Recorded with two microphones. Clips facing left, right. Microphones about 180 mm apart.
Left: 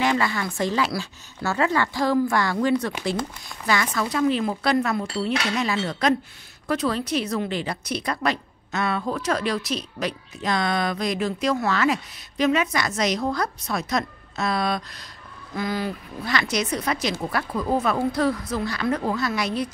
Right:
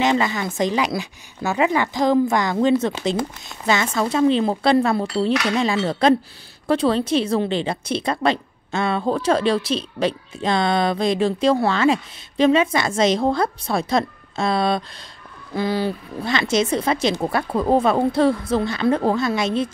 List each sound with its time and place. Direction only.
0.0 s a woman's voice: 20° right (ahead or behind)